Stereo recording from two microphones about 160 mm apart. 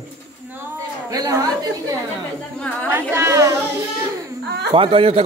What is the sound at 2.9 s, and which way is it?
Speech, 15° right (ahead or behind).